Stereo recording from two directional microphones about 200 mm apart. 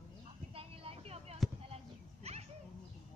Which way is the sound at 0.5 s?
30° right (ahead or behind).